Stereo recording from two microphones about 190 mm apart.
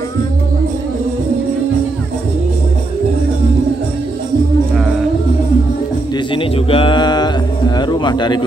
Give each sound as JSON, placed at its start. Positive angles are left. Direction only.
{"t": 6.3, "sound": "speech", "side_deg": 25}